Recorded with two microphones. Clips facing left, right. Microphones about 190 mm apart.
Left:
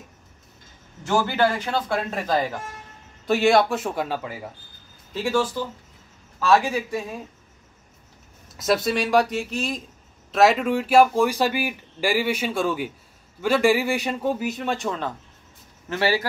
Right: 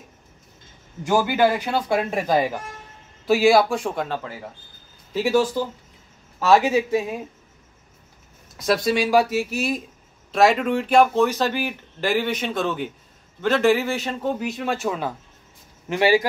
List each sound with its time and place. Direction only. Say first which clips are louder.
1.0 s speech: right 2 dB; 10° right (ahead or behind)
3.3 s speech: right 2 dB; centre (ahead or behind)
5.1 s speech: right 4 dB; 10° right (ahead or behind)
6.4 s a man's voice: right 3 dB; 25° right (ahead or behind)
8.5 s speech: right 1 dB; centre (ahead or behind)
10.3 s speech: even; centre (ahead or behind); by 16.3 s 15° right (ahead or behind)